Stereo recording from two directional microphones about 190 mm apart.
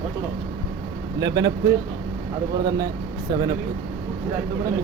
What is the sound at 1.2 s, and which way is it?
Speech, 20° right (ahead or behind).